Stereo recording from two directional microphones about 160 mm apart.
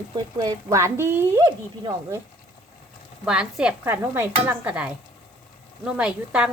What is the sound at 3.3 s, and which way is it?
Speech, 5° right (ahead or behind).